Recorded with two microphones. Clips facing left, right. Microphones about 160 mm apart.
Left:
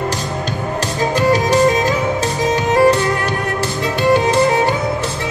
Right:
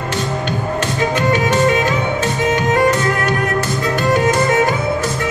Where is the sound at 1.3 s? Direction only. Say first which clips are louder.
Left 2 dB; 35° left (ahead or behind).